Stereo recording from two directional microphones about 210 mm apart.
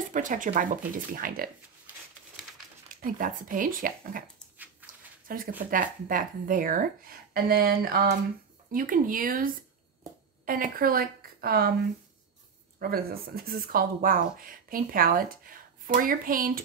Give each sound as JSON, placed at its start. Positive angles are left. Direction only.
{"t": 0.1, "sound": "speech", "side_deg": -40}
{"t": 3.1, "sound": "speech", "side_deg": -40}
{"t": 4.8, "sound": "a sound", "side_deg": -10}
{"t": 5.3, "sound": "a woman's voice", "side_deg": -45}
{"t": 12.7, "sound": "speech", "side_deg": -45}